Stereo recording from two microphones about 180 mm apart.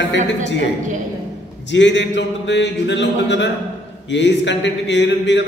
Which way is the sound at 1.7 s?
80° left.